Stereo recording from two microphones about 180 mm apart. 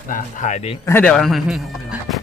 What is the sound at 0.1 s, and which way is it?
Speech, 45° left (ahead or behind).